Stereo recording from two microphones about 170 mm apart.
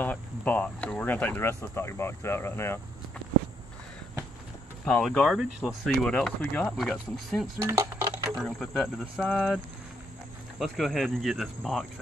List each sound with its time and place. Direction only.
0.0 s speech: 10° left (ahead or behind)
4.8 s speech: 5° left (ahead or behind)
7.6 s coin: 15° right (ahead or behind)
8.4 s speech: centre (ahead or behind)
10.6 s speech: centre (ahead or behind)